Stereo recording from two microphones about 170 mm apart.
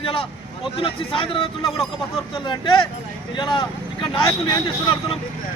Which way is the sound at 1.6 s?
Centre (ahead or behind).